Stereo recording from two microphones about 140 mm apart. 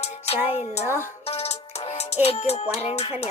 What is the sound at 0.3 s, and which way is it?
Music, 45° left (ahead or behind).